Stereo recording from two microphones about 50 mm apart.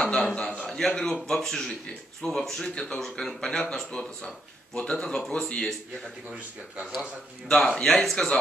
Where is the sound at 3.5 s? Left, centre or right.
Left.